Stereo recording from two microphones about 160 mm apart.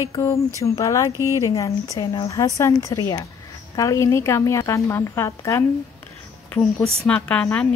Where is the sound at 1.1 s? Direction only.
20° right (ahead or behind).